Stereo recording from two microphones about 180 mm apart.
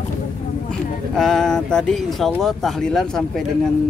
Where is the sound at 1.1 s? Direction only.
5° left (ahead or behind).